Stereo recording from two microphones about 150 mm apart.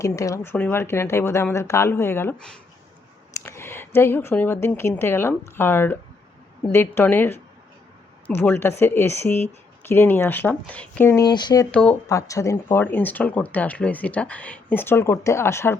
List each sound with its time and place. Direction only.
0.0 s speech: 20° left (ahead or behind)
3.4 s speech: 15° left (ahead or behind)
11.3 s speech: 30° left (ahead or behind)
11.7 s speech: 10° left (ahead or behind)
12.0 s speech: 20° left (ahead or behind)